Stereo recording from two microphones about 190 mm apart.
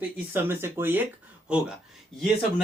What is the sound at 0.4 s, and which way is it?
Speech, 10° right (ahead or behind).